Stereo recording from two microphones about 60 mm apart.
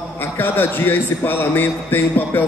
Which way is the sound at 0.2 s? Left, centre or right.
Left.